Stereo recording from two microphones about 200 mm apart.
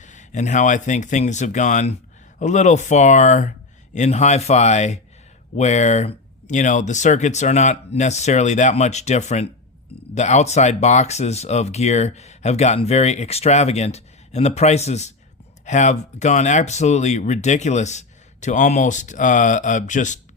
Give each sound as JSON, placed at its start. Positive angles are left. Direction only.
{"t": 0.0, "sound": "speech", "side_deg": 35}